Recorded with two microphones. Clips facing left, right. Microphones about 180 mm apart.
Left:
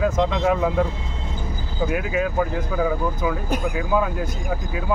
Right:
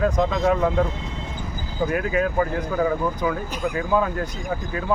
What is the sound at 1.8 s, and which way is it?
Speech, 5° left (ahead or behind).